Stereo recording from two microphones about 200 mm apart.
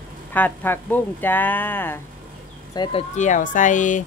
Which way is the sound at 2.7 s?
25° left (ahead or behind).